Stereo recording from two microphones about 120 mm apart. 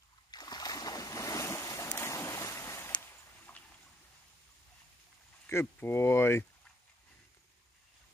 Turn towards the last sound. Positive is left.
turn(degrees=20)  # may be behind; listen again after turning